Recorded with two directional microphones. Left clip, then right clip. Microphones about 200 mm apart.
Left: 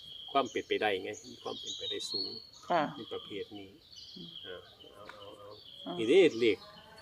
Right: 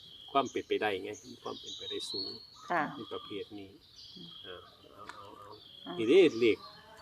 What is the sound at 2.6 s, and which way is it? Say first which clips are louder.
Speech: left 2 dB; 25° left (ahead or behind).